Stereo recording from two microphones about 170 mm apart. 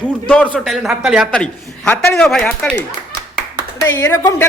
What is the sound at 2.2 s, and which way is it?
Speech, 5° left (ahead or behind).